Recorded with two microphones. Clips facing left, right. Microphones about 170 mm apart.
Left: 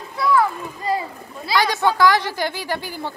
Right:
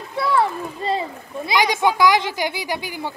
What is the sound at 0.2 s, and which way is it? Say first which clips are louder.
A child's voice: left 1 dB; 25° right (ahead or behind).